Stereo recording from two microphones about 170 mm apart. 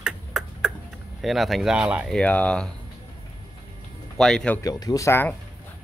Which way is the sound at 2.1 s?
5° left (ahead or behind).